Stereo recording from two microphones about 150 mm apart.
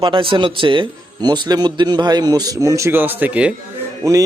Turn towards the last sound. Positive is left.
turn(degrees=-25)  # may be behind; listen again after turning